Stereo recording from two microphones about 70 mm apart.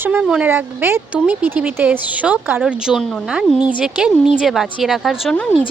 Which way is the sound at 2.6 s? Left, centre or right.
Centre.